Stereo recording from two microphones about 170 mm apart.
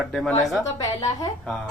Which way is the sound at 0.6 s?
20° left (ahead or behind).